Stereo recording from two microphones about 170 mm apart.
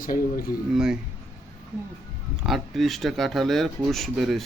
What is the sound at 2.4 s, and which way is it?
Speech, centre (ahead or behind).